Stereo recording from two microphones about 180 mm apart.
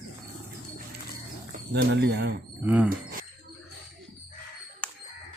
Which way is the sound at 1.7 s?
70° right (ahead or behind).